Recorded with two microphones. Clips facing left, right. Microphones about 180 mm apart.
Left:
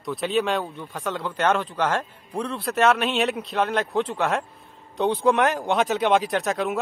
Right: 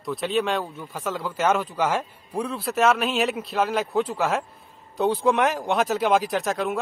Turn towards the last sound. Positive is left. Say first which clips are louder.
# left 1 dB
turn(degrees=0)  # may be behind; listen again after turning